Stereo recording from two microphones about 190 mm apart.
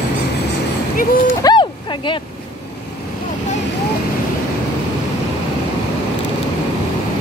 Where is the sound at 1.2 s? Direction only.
20° left (ahead or behind).